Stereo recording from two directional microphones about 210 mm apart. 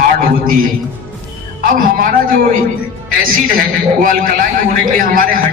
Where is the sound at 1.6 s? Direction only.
40° right (ahead or behind).